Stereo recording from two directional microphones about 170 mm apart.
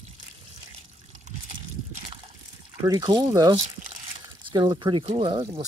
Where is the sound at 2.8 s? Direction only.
20° right (ahead or behind).